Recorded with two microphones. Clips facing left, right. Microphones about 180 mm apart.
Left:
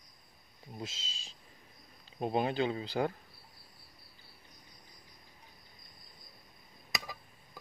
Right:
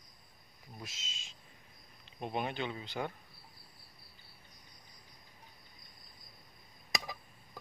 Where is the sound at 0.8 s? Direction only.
30° left (ahead or behind).